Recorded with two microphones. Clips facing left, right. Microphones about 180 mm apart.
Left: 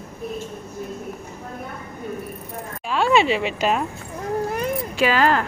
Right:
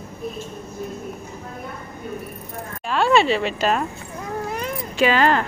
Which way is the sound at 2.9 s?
10° left (ahead or behind).